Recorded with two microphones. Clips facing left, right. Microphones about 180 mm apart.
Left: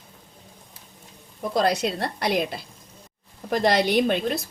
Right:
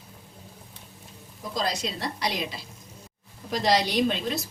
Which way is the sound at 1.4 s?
60° left (ahead or behind).